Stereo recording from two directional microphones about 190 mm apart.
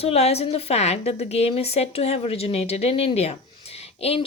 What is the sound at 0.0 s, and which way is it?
Speech, 35° left (ahead or behind).